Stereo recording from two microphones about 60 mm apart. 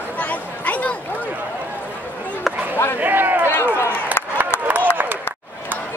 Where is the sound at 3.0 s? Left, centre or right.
Right.